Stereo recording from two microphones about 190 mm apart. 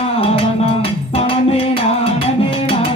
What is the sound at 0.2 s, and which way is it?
Music, 30° left (ahead or behind).